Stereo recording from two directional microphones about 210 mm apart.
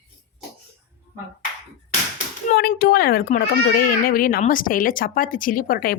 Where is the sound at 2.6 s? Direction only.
45° left (ahead or behind).